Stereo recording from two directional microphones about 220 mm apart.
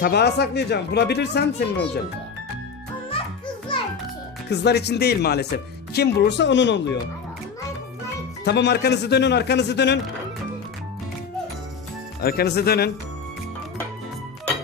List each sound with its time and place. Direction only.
0.0 s speech: 45° left (ahead or behind)
4.4 s speech: 50° left (ahead or behind)
8.4 s speech: 50° left (ahead or behind)
12.2 s speech: 45° left (ahead or behind)